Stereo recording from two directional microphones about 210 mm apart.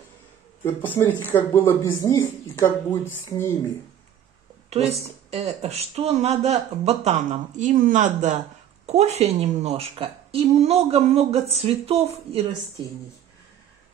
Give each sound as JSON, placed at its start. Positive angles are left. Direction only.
{"t": 0.7, "sound": "speech", "side_deg": 10}
{"t": 5.0, "sound": "a woman's voice", "side_deg": -30}